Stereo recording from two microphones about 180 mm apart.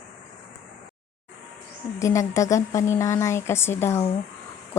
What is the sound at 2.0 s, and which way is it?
Speech, 15° left (ahead or behind).